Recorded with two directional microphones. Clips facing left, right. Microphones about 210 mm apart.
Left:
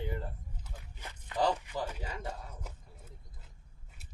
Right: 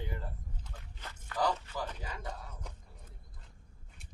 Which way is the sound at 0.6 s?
15° left (ahead or behind).